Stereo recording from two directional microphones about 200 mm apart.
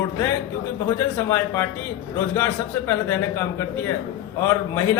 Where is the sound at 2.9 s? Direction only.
10° left (ahead or behind).